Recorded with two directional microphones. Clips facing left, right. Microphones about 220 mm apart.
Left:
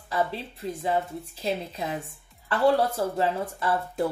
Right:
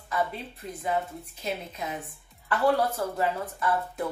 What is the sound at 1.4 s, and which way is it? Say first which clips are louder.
Speech: left 4 dB; 30° left (ahead or behind).